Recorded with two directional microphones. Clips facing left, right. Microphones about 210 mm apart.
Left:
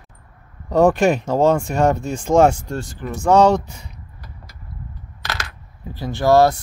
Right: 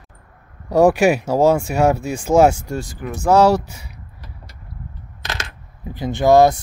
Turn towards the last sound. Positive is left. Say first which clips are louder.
# right 2 dB
turn(degrees=-15)  # may be behind; listen again after turning